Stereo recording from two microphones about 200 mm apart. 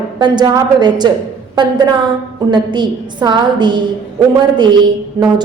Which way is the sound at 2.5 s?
20° right (ahead or behind).